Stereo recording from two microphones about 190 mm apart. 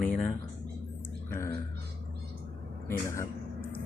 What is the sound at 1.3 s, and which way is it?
Music, 15° left (ahead or behind).